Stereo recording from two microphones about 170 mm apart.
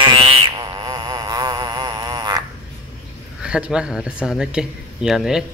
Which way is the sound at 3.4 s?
5° right (ahead or behind).